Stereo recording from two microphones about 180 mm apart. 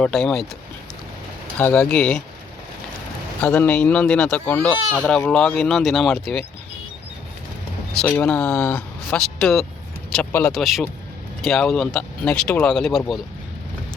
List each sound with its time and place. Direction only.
0.0 s speech: 5° left (ahead or behind)
1.5 s speech: 10° left (ahead or behind)
3.4 s speech: 10° left (ahead or behind)
7.9 s speech: 5° left (ahead or behind)